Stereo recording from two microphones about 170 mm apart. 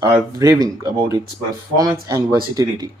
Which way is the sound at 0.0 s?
20° right (ahead or behind).